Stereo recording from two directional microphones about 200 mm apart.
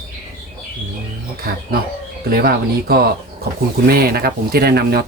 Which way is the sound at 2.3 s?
50° right (ahead or behind).